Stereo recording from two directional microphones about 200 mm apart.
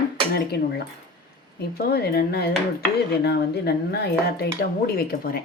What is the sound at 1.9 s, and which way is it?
Speech, 50° left (ahead or behind).